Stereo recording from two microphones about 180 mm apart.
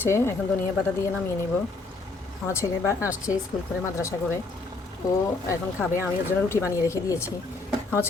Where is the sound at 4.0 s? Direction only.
15° left (ahead or behind).